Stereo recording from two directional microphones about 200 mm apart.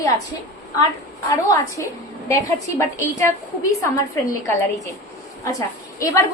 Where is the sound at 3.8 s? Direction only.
15° left (ahead or behind).